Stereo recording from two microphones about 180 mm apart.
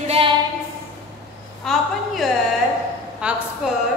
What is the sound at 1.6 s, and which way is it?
A woman's voice, centre (ahead or behind).